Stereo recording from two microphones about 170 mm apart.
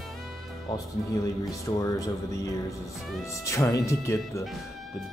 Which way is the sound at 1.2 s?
20° left (ahead or behind).